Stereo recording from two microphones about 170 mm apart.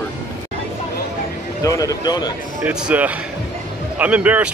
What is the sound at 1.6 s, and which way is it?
Speech, 20° left (ahead or behind).